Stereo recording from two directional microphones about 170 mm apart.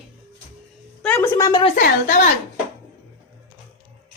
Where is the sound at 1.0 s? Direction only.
10° left (ahead or behind).